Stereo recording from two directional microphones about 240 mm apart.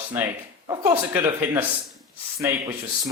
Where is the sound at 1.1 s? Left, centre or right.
Centre.